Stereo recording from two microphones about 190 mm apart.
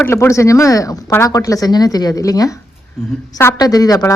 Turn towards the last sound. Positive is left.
turn(degrees=15)  # may be behind; listen again after turning